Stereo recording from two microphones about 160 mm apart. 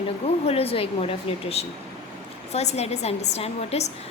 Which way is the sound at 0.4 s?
40° left (ahead or behind).